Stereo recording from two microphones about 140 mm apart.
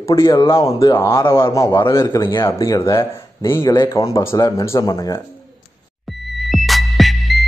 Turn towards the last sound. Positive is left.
turn(degrees=0)  # may be behind; listen again after turning